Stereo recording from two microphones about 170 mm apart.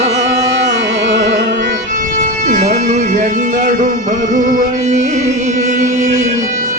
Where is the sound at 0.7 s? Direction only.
90° right.